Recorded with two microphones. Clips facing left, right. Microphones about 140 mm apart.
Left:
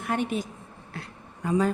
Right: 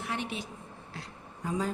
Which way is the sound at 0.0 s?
50° left (ahead or behind).